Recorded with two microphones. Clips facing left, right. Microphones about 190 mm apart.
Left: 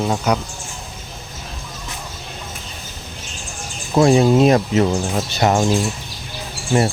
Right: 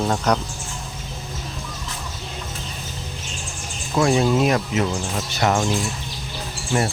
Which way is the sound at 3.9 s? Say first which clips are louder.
Left 5 dB; 25° left (ahead or behind).